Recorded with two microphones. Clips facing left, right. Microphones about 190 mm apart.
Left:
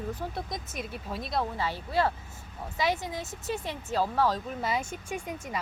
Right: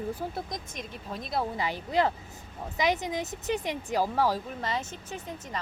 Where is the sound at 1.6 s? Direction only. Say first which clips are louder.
Right 3 dB; 15° right (ahead or behind).